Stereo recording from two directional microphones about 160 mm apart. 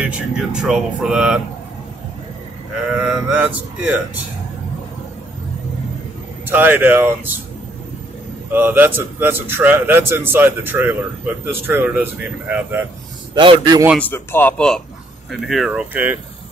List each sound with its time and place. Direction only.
0.0 s speech: 5° right (ahead or behind)
2.9 s a man's voice: 5° right (ahead or behind)
6.4 s a man's voice: 10° right (ahead or behind)
8.5 s a man's voice: 10° right (ahead or behind)
13.3 s a man's voice: 30° right (ahead or behind)
13.9 s speech: 10° left (ahead or behind)
15.4 s a man's voice: centre (ahead or behind)